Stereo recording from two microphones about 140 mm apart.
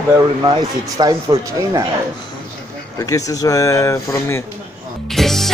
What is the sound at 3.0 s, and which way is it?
Speech, 25° left (ahead or behind).